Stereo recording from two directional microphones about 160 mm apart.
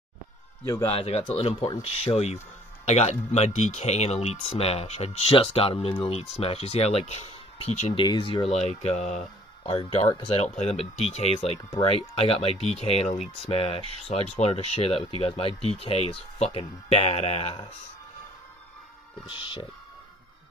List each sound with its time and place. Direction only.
0.8 s speech: 35° left (ahead or behind)
8.0 s speech: 30° left (ahead or behind)
8.5 s speech: 45° left (ahead or behind)
19.2 s speech: 30° left (ahead or behind)